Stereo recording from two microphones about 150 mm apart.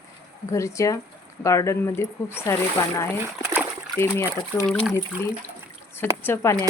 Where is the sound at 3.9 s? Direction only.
15° left (ahead or behind).